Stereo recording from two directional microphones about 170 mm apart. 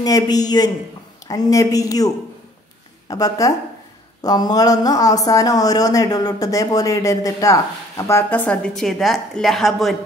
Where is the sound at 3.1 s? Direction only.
20° left (ahead or behind).